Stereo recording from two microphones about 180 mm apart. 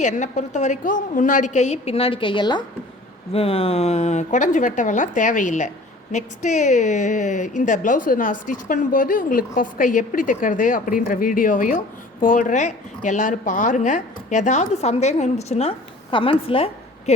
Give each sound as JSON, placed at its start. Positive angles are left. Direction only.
{"t": 0.0, "sound": "a woman's voice", "side_deg": 40}